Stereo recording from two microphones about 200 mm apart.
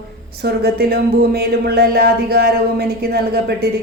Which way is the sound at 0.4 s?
50° right (ahead or behind).